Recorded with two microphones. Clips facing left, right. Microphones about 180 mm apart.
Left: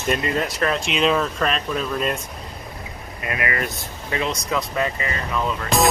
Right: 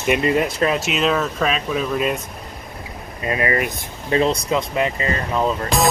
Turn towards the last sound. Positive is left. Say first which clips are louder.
# right 4 dB
turn(degrees=-35)  # may be behind; listen again after turning